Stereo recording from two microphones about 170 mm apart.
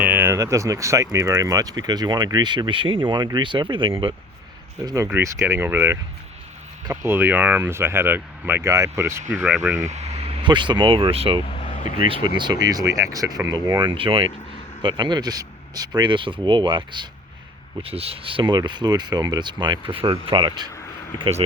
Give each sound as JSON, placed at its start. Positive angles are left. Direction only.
{"t": 0.0, "sound": "speech", "side_deg": -10}
{"t": 5.0, "sound": "speech", "side_deg": -15}
{"t": 9.7, "sound": "speech", "side_deg": -45}
{"t": 11.5, "sound": "vehicle", "side_deg": 45}
{"t": 11.9, "sound": "speech", "side_deg": -30}